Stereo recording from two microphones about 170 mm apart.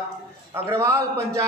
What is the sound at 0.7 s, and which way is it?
Speech, 15° right (ahead or behind).